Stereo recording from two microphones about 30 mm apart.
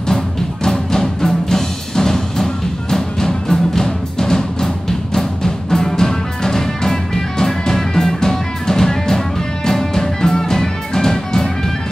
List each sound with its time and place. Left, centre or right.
0.7 s music: centre